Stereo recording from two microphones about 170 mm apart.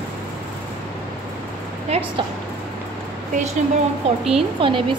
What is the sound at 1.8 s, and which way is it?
Speech, 40° right (ahead or behind).